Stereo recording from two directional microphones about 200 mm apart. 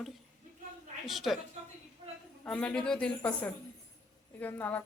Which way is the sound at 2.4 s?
5° left (ahead or behind).